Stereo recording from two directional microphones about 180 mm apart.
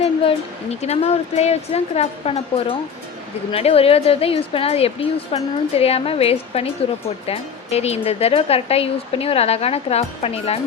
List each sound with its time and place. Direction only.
0.0 s a woman's voice: 35° left (ahead or behind)